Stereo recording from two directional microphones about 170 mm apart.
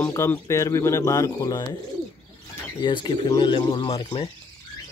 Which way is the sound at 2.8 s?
30° left (ahead or behind).